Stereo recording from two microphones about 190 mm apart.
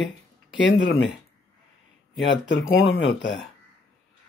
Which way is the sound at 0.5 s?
70° left (ahead or behind).